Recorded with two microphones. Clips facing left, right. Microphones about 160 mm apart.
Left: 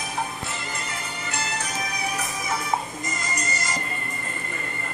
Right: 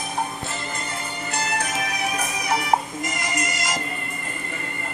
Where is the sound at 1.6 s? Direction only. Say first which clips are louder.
Right 4 dB; 70° right (ahead or behind); by 3.8 s 90° right.